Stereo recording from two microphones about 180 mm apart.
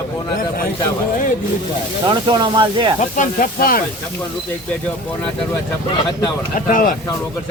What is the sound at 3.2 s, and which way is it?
Speech, 50° left (ahead or behind).